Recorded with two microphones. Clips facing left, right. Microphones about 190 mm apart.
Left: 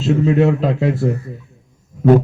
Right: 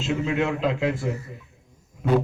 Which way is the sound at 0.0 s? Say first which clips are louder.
Left 10 dB; 35° left (ahead or behind).